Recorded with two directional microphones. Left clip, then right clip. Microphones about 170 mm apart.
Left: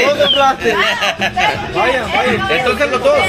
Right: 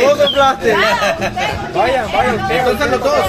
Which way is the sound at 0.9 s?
50° right (ahead or behind).